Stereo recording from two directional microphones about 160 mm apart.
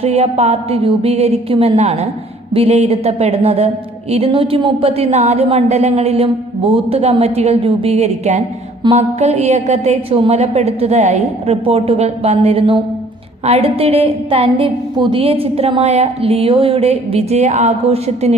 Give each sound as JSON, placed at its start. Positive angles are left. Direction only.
{"t": 0.0, "sound": "speech", "side_deg": -40}